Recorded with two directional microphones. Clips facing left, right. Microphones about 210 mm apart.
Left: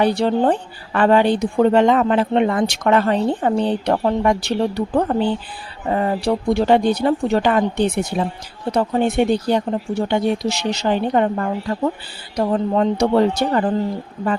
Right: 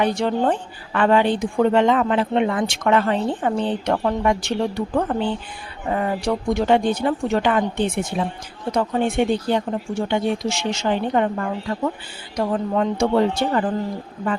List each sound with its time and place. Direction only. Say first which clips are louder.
0.0 s speech: left 3 dB; 35° left (ahead or behind)